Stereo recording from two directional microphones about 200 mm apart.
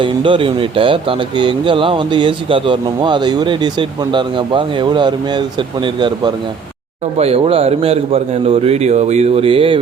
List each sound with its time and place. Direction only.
0.0 s a man's voice: 25° right (ahead or behind)